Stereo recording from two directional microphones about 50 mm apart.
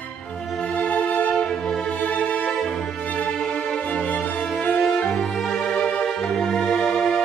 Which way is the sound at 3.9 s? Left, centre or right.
Left.